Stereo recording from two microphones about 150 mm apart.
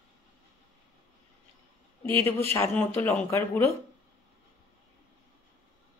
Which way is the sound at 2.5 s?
15° left (ahead or behind).